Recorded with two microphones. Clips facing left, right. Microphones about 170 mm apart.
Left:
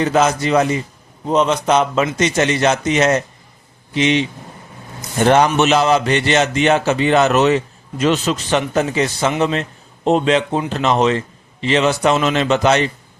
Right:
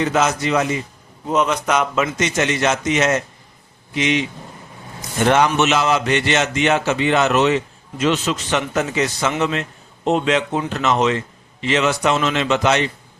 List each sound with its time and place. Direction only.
0.0 s a man's voice: 35° left (ahead or behind)
5.2 s a man's voice: 35° left (ahead or behind)